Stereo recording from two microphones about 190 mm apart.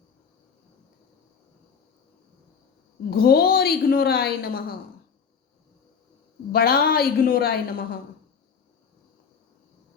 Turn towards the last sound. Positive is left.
turn(degrees=50)  # may be behind; listen again after turning